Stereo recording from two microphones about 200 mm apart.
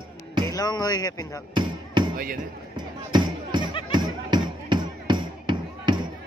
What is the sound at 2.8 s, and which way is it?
Music, 20° right (ahead or behind).